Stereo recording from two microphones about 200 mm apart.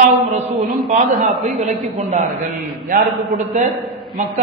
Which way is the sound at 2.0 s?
35° right (ahead or behind).